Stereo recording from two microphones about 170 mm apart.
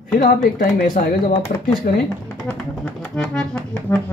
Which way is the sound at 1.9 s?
60° left (ahead or behind).